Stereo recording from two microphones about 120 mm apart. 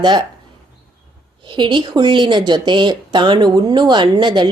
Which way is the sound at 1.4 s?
40° right (ahead or behind).